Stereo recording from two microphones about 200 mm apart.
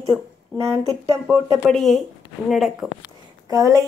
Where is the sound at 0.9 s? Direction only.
15° right (ahead or behind).